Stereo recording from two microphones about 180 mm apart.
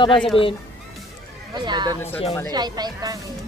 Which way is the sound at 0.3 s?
30° left (ahead or behind).